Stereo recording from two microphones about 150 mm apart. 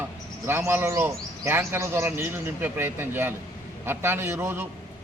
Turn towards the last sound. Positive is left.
turn(degrees=-15)  # may be behind; listen again after turning